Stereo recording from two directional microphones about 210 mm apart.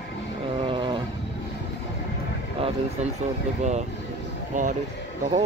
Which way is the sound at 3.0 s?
35° right (ahead or behind).